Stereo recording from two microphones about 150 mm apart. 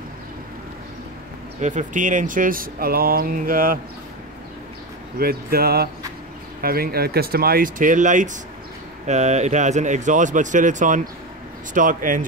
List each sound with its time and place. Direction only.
1.6 s speech: 55° right (ahead or behind); by 3.8 s 70° right (ahead or behind)
5.2 s speech: 90° right; by 12.3 s 65° right (ahead or behind)